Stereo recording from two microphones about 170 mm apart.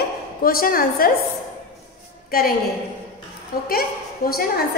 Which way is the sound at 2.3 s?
60° left (ahead or behind).